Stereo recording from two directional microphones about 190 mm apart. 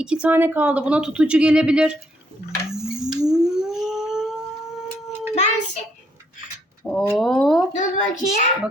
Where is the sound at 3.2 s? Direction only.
Centre (ahead or behind).